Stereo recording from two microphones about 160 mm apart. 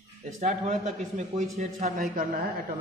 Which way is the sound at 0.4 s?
50° right (ahead or behind).